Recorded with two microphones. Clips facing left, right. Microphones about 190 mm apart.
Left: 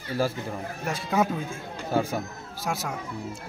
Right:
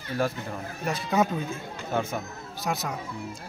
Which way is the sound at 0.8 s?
10° left (ahead or behind).